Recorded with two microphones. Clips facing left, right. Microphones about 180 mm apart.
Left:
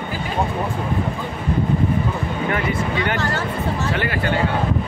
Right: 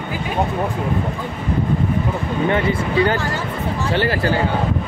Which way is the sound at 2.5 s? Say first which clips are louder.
Right 3 dB; 30° right (ahead or behind).